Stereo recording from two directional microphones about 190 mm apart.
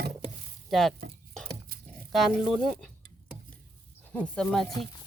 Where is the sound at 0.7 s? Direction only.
Centre (ahead or behind).